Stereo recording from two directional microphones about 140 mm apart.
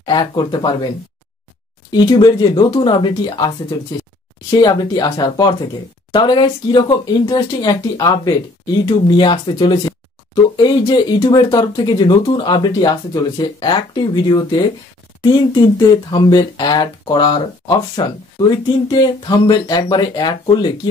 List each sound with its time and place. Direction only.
0.0 s speech: 30° left (ahead or behind)
1.9 s speech: 30° left (ahead or behind)
15.2 s speech: 30° left (ahead or behind)